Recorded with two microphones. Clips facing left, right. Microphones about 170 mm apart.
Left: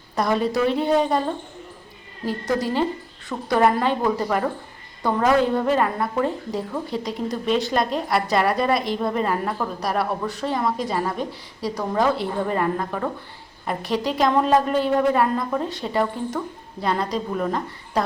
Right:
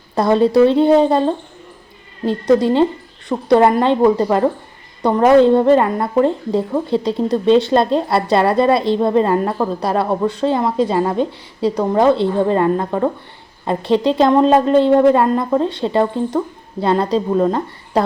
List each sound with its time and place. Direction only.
0.2 s a woman's voice: 25° right (ahead or behind)